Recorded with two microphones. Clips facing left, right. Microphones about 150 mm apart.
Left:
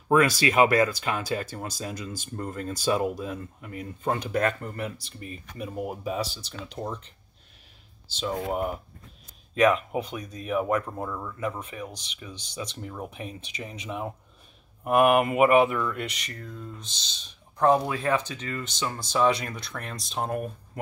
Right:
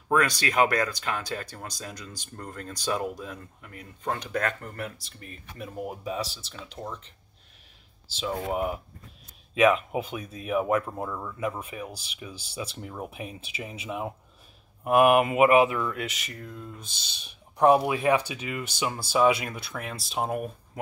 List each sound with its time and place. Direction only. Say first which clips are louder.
0.1 s speech: left 4 dB; 5° left (ahead or behind)
6.8 s speech: left 4 dB; 10° left (ahead or behind)
8.2 s speech: even; centre (ahead or behind)